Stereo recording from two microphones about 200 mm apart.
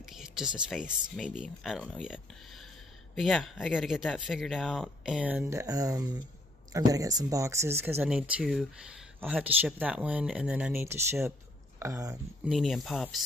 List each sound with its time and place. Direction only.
0.0 s a sound: centre (ahead or behind)
0.6 s speech: 5° right (ahead or behind)
12.4 s speech: centre (ahead or behind)